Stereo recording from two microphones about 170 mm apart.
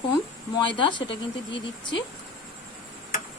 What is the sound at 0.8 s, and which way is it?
Speech, 30° left (ahead or behind).